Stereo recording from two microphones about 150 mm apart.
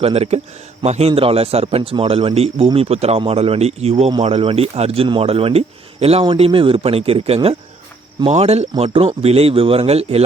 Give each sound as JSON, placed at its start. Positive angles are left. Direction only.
{"t": 0.0, "sound": "a man's voice", "side_deg": -40}